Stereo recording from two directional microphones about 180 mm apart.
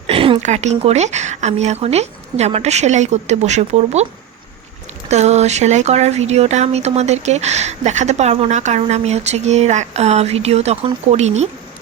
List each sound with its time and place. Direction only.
0.1 s speech: 30° right (ahead or behind)
5.0 s speech: 40° right (ahead or behind)